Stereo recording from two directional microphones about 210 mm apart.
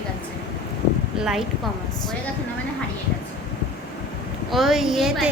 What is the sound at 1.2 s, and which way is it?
Speech, centre (ahead or behind).